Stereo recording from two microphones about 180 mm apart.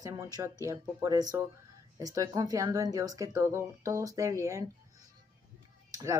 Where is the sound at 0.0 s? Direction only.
20° right (ahead or behind).